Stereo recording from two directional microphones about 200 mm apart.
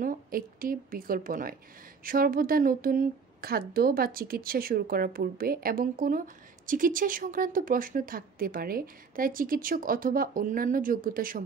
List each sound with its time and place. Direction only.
0.0 s a woman's voice: 45° right (ahead or behind)